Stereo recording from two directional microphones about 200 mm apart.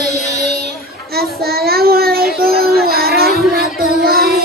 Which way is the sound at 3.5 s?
50° right (ahead or behind).